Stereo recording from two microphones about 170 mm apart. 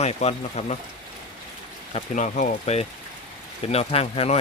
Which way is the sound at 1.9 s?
40° left (ahead or behind).